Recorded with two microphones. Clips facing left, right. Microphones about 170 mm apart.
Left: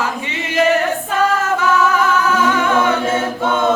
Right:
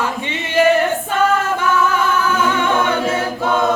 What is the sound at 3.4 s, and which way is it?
Choir, centre (ahead or behind).